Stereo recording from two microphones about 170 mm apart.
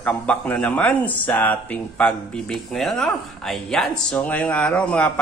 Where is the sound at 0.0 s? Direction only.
10° left (ahead or behind).